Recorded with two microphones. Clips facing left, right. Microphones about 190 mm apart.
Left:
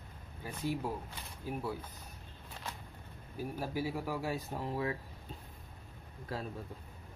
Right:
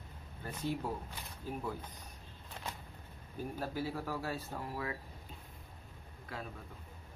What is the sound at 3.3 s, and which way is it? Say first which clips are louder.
Speech: left 1 dB; 10° left (ahead or behind).